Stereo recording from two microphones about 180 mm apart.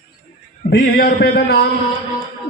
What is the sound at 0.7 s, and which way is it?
Speech, 55° left (ahead or behind).